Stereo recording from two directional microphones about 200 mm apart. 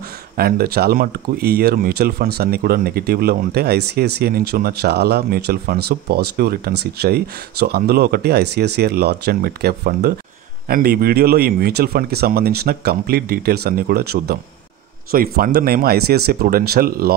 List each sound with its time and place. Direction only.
0.4 s speech: 50° right (ahead or behind)